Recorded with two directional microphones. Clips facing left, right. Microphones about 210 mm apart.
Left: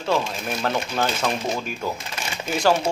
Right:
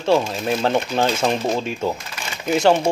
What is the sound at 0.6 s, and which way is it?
Speech, 30° right (ahead or behind).